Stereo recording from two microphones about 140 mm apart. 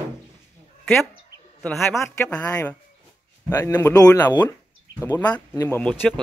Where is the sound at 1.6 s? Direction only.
10° left (ahead or behind); by 4.4 s 25° left (ahead or behind).